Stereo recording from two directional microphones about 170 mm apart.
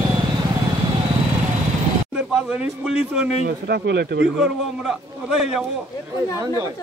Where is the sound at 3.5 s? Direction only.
65° right (ahead or behind); by 4.3 s 85° right.